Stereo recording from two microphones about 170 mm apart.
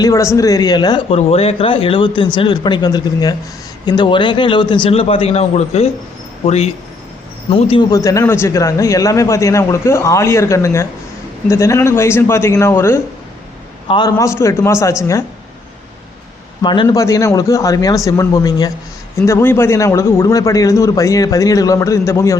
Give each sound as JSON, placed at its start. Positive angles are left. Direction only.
{"t": 0.0, "sound": "speech", "side_deg": 20}
{"t": 1.1, "sound": "speech", "side_deg": 35}
{"t": 7.9, "sound": "a man's voice", "side_deg": 20}
{"t": 13.8, "sound": "a man's voice", "side_deg": 25}
{"t": 16.6, "sound": "a man's voice", "side_deg": 30}